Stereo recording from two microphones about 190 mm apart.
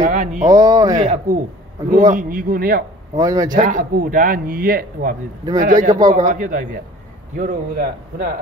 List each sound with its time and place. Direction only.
0.0 s a sound: 40° right (ahead or behind)
0.5 s speech: 20° right (ahead or behind)
1.0 s speech: 35° right (ahead or behind)
3.2 s speech: 20° right (ahead or behind)
3.5 s speech: 45° right (ahead or behind)